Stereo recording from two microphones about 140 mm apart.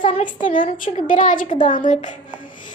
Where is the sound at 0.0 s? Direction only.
65° left (ahead or behind).